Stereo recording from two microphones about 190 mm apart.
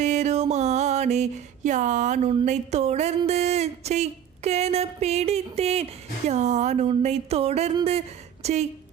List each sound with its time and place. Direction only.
0.0 s music: 35° right (ahead or behind)
2.3 s speech: 35° right (ahead or behind)